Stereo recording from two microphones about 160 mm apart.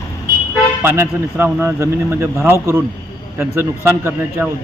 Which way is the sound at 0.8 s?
15° right (ahead or behind).